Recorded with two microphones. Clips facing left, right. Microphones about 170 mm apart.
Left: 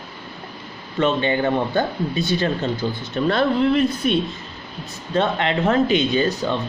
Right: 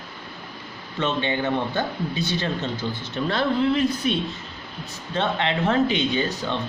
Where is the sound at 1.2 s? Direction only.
45° left (ahead or behind).